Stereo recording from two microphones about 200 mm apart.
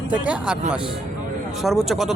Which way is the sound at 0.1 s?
5° right (ahead or behind).